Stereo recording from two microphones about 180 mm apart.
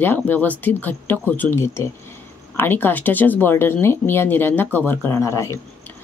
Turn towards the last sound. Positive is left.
turn(degrees=15)  # may be behind; listen again after turning